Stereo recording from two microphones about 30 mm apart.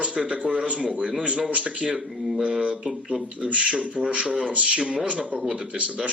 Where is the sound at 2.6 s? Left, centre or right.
Right.